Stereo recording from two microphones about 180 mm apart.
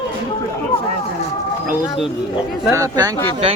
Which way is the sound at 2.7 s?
20° right (ahead or behind).